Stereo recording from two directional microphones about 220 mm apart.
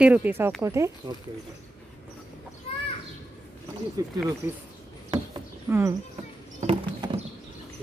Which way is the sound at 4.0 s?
15° right (ahead or behind).